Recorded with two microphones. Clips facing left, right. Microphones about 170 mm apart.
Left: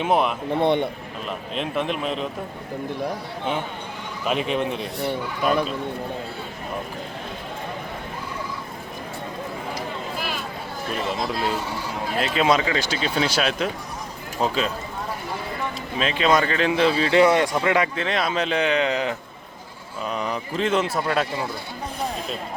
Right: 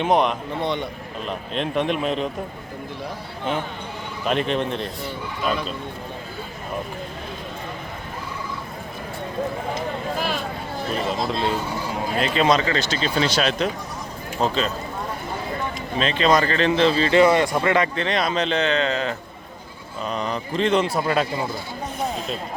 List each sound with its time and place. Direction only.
0.0 s speech: 5° left (ahead or behind)
0.5 s speech: 55° left (ahead or behind)
1.5 s speech: centre (ahead or behind)
4.3 s speech: 5° left (ahead or behind)
4.9 s speech: 60° left (ahead or behind)
11.2 s speech: 5° left (ahead or behind)
16.0 s speech: 5° left (ahead or behind)